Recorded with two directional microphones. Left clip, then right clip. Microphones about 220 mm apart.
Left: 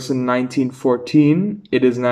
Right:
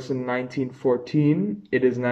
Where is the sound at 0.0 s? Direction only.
5° left (ahead or behind).